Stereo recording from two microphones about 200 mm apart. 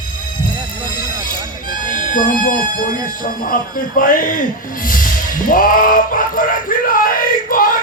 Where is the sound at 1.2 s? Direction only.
40° left (ahead or behind).